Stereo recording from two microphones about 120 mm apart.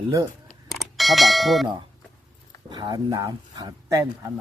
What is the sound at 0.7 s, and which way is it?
Bell, centre (ahead or behind).